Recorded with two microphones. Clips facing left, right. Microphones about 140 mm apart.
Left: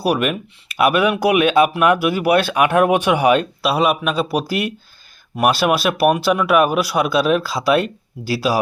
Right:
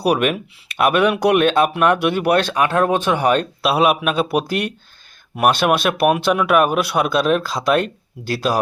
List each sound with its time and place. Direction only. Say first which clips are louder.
0.0 s speech: right 1 dB; centre (ahead or behind)